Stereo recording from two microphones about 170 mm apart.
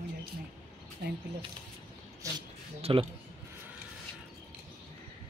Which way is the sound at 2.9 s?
30° right (ahead or behind).